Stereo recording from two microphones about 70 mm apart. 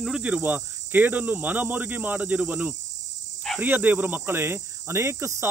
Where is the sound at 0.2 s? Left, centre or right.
Right.